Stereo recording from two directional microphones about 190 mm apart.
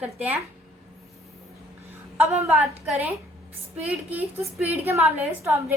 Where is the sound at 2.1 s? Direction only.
15° right (ahead or behind).